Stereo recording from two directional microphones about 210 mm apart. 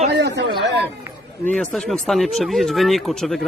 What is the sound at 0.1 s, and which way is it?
Chatter, 55° right (ahead or behind).